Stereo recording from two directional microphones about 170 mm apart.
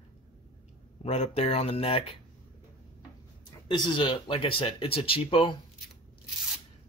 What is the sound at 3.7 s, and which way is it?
Speech, 30° left (ahead or behind).